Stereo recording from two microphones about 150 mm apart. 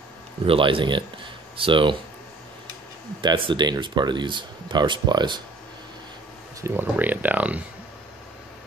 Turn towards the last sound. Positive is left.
turn(degrees=-10)  # may be behind; listen again after turning